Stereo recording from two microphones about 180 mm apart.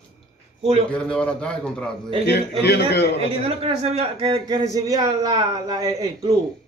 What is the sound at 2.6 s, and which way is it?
Speech, 65° left (ahead or behind).